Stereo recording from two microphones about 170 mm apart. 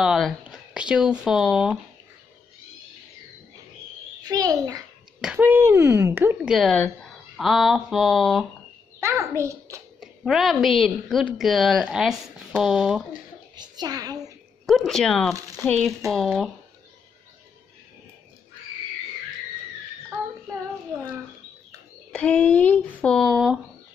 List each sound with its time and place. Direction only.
0.0 s a woman's voice: centre (ahead or behind)
4.2 s a child's voice: 20° right (ahead or behind)
5.2 s speech: 10° right (ahead or behind)
9.0 s a child's voice: 15° right (ahead or behind)
9.9 s a woman's voice: centre (ahead or behind)
13.6 s a child's voice: 25° right (ahead or behind)
14.9 s a woman's voice: centre (ahead or behind)
22.1 s speech: 5° left (ahead or behind)